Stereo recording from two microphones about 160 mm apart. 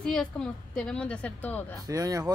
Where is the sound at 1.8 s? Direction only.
20° right (ahead or behind).